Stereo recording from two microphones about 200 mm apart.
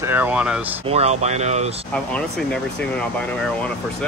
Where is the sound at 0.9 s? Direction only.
30° right (ahead or behind).